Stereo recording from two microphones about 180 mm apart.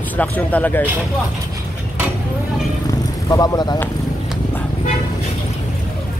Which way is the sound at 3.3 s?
20° left (ahead or behind).